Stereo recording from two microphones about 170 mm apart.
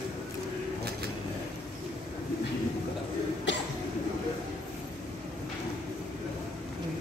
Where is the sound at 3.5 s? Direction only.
90° left.